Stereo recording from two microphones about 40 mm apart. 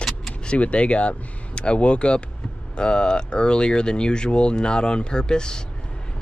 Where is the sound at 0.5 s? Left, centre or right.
Left.